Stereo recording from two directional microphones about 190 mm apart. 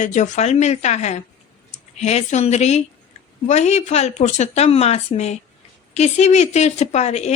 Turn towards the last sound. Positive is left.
turn(degrees=35)  # may be behind; listen again after turning